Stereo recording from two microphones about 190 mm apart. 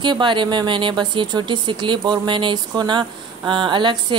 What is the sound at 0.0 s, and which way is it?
Speech, 25° right (ahead or behind).